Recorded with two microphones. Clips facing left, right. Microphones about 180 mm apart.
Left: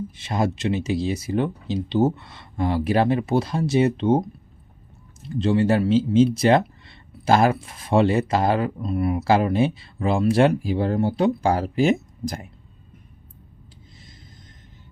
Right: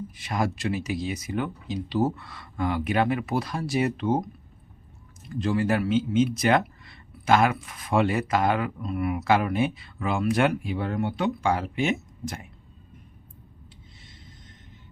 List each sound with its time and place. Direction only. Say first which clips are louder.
0.1 s speech: left 2 dB; 25° left (ahead or behind)